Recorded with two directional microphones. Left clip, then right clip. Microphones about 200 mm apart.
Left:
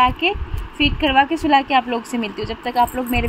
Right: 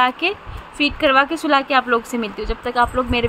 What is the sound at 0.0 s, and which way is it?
Speech, 70° right (ahead or behind).